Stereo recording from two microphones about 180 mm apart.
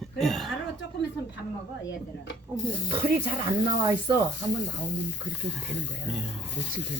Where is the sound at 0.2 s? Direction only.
Centre (ahead or behind).